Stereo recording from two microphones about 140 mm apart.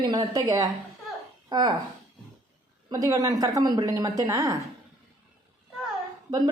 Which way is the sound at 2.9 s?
25° right (ahead or behind).